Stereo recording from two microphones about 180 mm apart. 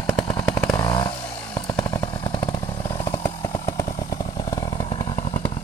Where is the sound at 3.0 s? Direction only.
15° left (ahead or behind).